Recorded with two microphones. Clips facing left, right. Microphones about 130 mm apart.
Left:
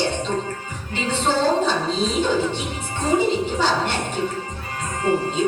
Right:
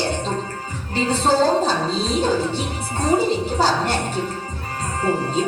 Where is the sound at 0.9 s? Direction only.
40° right (ahead or behind).